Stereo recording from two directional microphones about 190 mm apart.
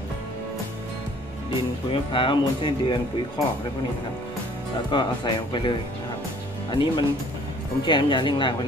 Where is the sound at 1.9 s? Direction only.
25° left (ahead or behind).